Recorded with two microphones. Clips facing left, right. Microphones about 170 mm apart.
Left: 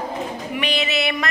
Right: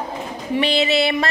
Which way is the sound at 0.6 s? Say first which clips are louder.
Right 6 dB; 30° right (ahead or behind).